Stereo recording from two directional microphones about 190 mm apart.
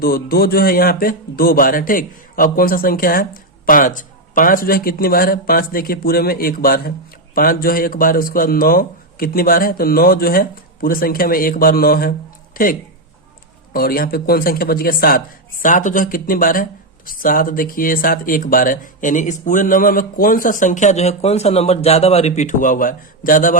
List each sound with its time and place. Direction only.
0.0 s speech: 50° left (ahead or behind)
13.7 s speech: 50° left (ahead or behind)